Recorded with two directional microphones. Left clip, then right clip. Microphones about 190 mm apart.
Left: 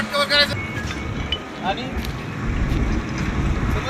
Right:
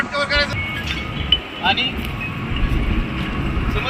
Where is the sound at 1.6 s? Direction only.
45° left (ahead or behind).